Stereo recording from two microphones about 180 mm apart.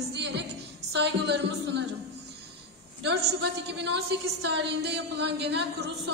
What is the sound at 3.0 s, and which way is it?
A woman's voice, 70° right (ahead or behind).